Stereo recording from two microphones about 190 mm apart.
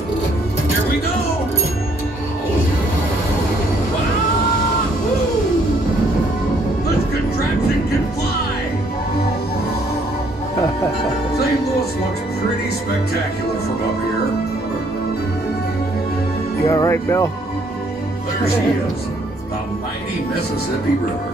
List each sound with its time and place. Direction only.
16.6 s speech: 15° left (ahead or behind)